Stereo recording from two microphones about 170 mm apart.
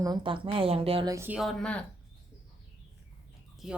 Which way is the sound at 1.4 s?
Centre (ahead or behind).